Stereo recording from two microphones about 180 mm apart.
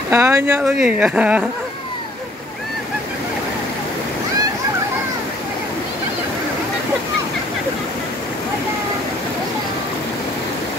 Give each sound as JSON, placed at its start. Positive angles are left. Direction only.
{"t": 0.1, "sound": "speech", "side_deg": -15}